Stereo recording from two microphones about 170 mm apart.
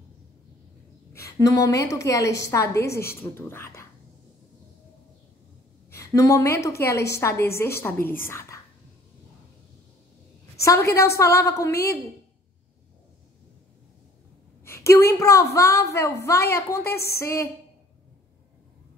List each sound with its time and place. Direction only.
1.1 s a woman's voice: 20° left (ahead or behind)
5.9 s a woman's voice: 15° left (ahead or behind)
10.6 s a woman's voice: 15° left (ahead or behind)
14.9 s a woman's voice: 15° left (ahead or behind)